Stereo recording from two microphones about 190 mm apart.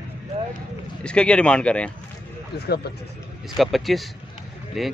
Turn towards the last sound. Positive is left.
turn(degrees=0)  # may be behind; listen again after turning